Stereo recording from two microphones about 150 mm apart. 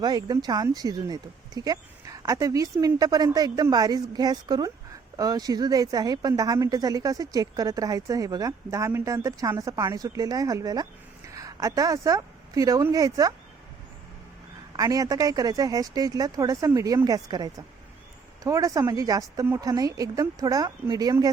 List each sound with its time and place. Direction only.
0.0 s a woman's voice: 25° right (ahead or behind)
14.8 s speech: 25° right (ahead or behind)